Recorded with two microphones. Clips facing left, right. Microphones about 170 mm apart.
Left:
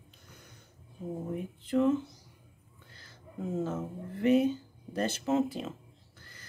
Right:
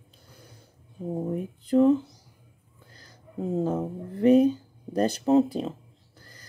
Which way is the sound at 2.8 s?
40° right (ahead or behind).